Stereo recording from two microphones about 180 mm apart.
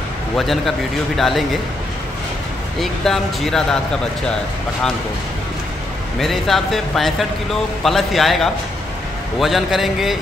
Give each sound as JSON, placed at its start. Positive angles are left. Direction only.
{"t": 0.4, "sound": "a man's voice", "side_deg": 0}
{"t": 2.8, "sound": "a man's voice", "side_deg": 0}
{"t": 6.1, "sound": "a man's voice", "side_deg": 0}